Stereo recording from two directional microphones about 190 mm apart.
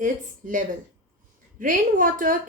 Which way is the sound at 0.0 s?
45° right (ahead or behind).